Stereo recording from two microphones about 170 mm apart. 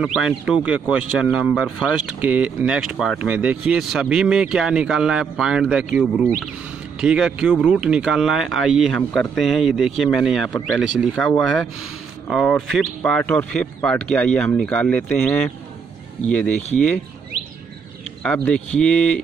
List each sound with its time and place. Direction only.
0.0 s speech: centre (ahead or behind)
18.2 s speech: 5° left (ahead or behind)